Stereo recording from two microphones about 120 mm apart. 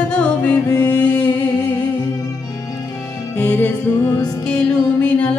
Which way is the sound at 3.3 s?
15° left (ahead or behind).